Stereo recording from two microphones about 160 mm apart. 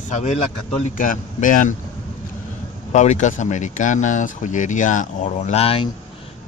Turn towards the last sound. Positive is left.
turn(degrees=40)  # may be behind; listen again after turning